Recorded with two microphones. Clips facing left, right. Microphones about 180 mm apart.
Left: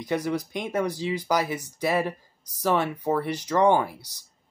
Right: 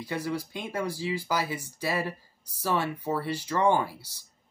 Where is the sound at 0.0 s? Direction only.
20° left (ahead or behind).